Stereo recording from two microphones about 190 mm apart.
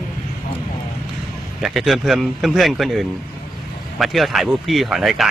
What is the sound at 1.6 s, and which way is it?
Speech, centre (ahead or behind).